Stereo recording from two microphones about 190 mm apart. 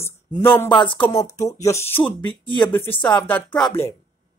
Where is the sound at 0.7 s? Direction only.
25° left (ahead or behind).